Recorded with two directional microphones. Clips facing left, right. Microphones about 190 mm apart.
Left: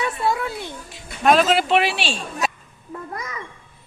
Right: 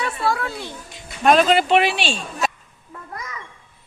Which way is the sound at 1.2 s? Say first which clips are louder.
Right 1 dB; centre (ahead or behind).